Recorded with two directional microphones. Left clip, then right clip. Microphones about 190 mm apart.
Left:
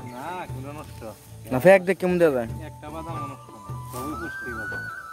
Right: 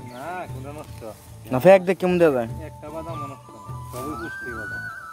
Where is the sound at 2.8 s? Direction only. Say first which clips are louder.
Right 2 dB; 60° left (ahead or behind).